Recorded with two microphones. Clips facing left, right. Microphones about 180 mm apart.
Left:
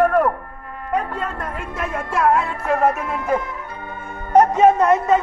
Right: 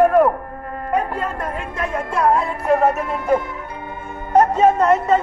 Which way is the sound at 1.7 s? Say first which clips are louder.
Even; 5° left (ahead or behind).